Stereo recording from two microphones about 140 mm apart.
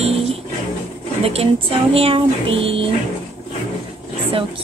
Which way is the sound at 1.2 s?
40° right (ahead or behind).